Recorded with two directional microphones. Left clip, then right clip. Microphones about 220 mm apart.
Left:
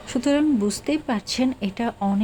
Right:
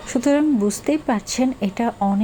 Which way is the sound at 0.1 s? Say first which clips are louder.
Right 3 dB; 10° right (ahead or behind).